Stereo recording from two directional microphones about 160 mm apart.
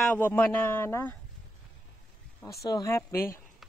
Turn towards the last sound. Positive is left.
turn(degrees=15)  # may be behind; listen again after turning